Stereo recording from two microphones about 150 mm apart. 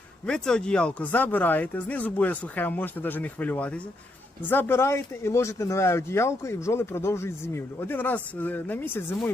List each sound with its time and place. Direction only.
0.3 s speech: 5° left (ahead or behind)